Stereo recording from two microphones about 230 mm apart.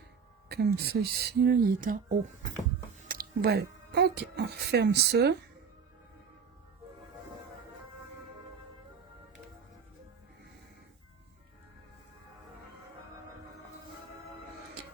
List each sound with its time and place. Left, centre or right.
0.4 s speech: right